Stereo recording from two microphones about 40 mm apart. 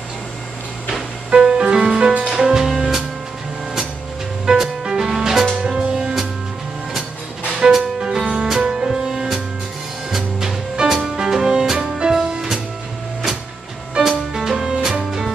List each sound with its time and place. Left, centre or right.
1.3 s music: right
4.5 s music: centre
5.6 s music: centre
7.6 s music: centre
10.8 s music: right
11.1 s music: centre
14.0 s music: centre